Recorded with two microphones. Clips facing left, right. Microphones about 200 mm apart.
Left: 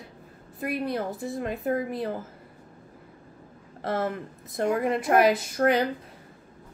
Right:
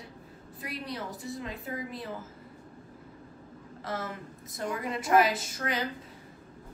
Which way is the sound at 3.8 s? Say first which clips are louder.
Left 8 dB; 60° left (ahead or behind).